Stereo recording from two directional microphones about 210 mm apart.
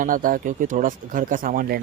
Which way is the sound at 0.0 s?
40° right (ahead or behind).